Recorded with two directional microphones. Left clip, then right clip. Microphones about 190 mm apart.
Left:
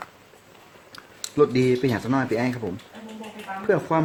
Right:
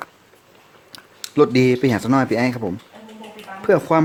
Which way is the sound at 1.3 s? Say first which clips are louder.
Right 4 dB; 55° right (ahead or behind).